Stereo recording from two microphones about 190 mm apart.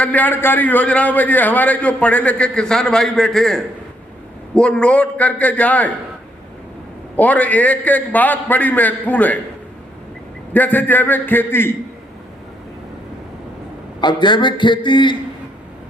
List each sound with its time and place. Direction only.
0.0 s a man's voice: 10° left (ahead or behind)
7.2 s a man's voice: 10° left (ahead or behind)
10.5 s a man's voice: 10° left (ahead or behind)
14.0 s a man's voice: 25° left (ahead or behind)